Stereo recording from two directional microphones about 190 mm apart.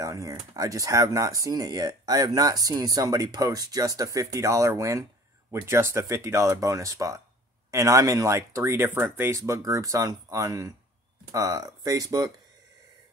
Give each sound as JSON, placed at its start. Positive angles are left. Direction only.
{"t": 0.0, "sound": "speech", "side_deg": -15}